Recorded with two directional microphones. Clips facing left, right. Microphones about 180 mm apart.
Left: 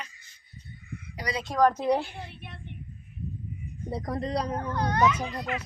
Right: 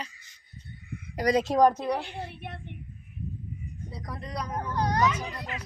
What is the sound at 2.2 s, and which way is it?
Speech, 55° right (ahead or behind).